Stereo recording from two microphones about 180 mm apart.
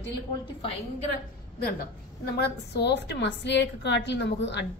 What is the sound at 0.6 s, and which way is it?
Speech, 35° left (ahead or behind).